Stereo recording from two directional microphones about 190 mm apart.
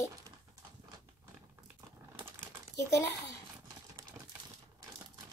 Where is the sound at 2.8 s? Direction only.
15° left (ahead or behind).